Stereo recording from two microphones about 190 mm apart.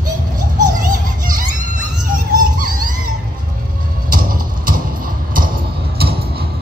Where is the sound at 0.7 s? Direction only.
45° right (ahead or behind).